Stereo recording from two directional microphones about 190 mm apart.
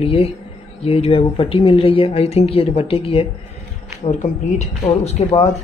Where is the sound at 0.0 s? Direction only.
30° left (ahead or behind).